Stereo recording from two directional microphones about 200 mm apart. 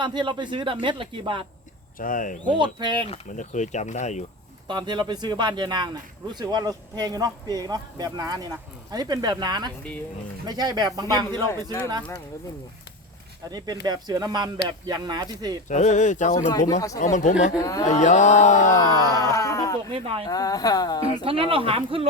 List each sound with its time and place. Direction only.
0.0 s speech: 25° right (ahead or behind)
2.0 s speech: 40° left (ahead or behind)
2.5 s speech: 25° right (ahead or behind)
3.1 s speech: 40° left (ahead or behind)
4.7 s speech: 20° right (ahead or behind)
13.8 s speech: 20° right (ahead or behind)
15.7 s speech: 35° left (ahead or behind)
17.6 s speech: 15° left (ahead or behind)
17.8 s speech: 35° left (ahead or behind)
18.7 s speech: 20° left (ahead or behind)
19.9 s speech: 30° right (ahead or behind)
20.2 s speech: 20° left (ahead or behind)
21.2 s speech: 25° right (ahead or behind)